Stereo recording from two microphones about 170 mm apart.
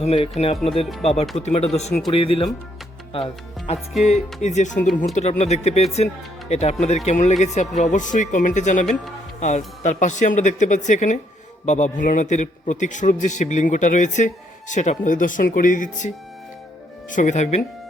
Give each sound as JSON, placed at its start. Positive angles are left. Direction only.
{"t": 0.0, "sound": "speech", "side_deg": 35}
{"t": 4.0, "sound": "a man's voice", "side_deg": 45}